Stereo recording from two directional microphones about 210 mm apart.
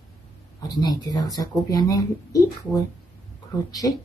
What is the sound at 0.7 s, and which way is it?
Speech, 20° left (ahead or behind).